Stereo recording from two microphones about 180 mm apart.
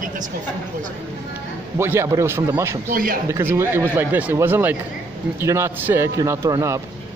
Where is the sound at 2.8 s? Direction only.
50° right (ahead or behind).